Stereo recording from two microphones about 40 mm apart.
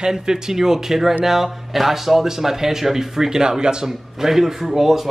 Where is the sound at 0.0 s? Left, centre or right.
Centre.